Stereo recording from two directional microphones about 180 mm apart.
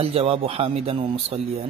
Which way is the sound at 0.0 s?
30° right (ahead or behind).